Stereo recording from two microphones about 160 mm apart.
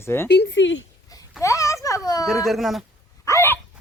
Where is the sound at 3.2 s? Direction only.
15° left (ahead or behind).